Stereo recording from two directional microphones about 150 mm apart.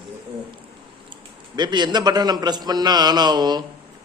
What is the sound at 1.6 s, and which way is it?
A man's voice, 30° right (ahead or behind).